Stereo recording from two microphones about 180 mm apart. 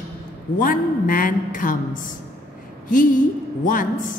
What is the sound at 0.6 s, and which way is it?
A woman's voice, 50° left (ahead or behind).